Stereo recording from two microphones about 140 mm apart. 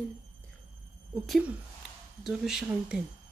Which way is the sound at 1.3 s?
10° right (ahead or behind).